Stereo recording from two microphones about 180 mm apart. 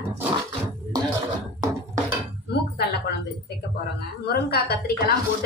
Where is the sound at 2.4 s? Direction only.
65° left (ahead or behind).